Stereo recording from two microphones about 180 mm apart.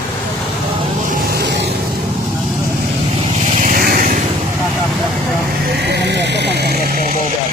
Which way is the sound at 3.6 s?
50° right (ahead or behind).